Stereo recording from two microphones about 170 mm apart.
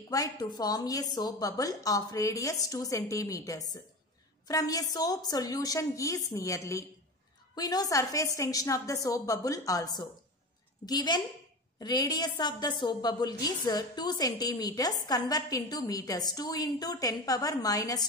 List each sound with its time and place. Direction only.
0.1 s a woman's voice: 20° left (ahead or behind)